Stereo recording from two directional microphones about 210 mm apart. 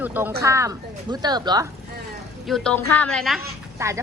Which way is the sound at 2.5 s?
5° left (ahead or behind).